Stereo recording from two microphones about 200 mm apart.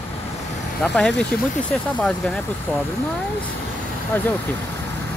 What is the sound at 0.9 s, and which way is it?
Speech, 5° left (ahead or behind).